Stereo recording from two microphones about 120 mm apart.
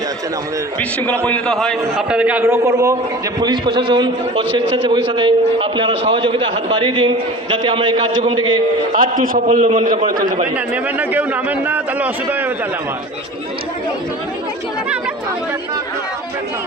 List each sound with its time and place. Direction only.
1.2 s a man's voice: 5° left (ahead or behind)
2.0 s a man's voice: 10° right (ahead or behind); by 3.0 s 25° right (ahead or behind)
3.4 s a man's voice: 40° right (ahead or behind)
9.5 s a man's voice: 80° right
10.9 s a man's voice: 15° right (ahead or behind)